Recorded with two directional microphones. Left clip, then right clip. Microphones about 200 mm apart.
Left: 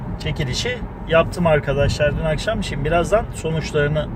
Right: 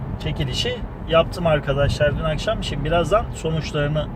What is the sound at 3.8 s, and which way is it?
Speech, 15° left (ahead or behind).